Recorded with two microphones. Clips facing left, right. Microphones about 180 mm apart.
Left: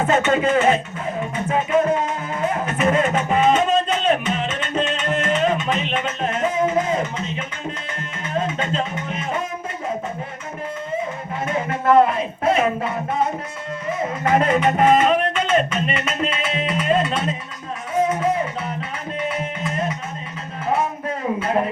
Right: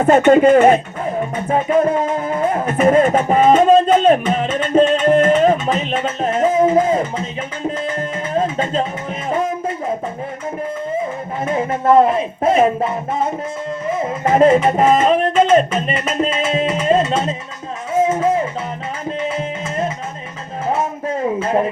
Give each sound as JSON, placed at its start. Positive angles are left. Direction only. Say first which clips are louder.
{"t": 0.1, "sound": "speech", "louder": "right 10 dB", "side_deg": -50}
{"t": 1.5, "sound": "speech", "louder": "right 3 dB", "side_deg": -35}
{"t": 2.6, "sound": "speech", "louder": "right 8 dB", "side_deg": -50}
{"t": 3.0, "sound": "music", "louder": "right 5 dB", "side_deg": -40}
{"t": 7.9, "sound": "music", "louder": "right 6 dB", "side_deg": -40}
{"t": 11.4, "sound": "speech", "louder": "right 4 dB", "side_deg": -35}
{"t": 14.3, "sound": "speech", "louder": "right 6 dB", "side_deg": -30}
{"t": 16.5, "sound": "music", "louder": "right 4 dB", "side_deg": -40}